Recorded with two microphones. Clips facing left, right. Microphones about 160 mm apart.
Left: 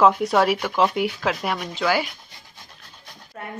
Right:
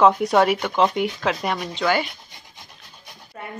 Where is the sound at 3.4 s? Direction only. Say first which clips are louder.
Even; centre (ahead or behind).